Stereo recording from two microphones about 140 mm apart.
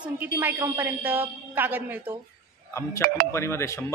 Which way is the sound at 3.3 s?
20° left (ahead or behind).